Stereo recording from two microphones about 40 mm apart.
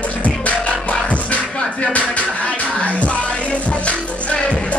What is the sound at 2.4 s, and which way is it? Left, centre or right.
Music, left.